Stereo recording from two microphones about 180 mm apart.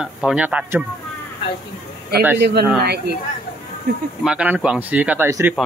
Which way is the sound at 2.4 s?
65° right (ahead or behind).